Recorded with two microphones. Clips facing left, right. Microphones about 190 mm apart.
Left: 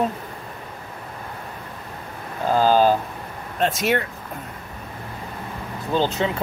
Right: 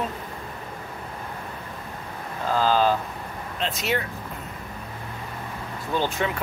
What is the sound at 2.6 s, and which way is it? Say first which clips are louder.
Speech: left 4 dB; 45° left (ahead or behind).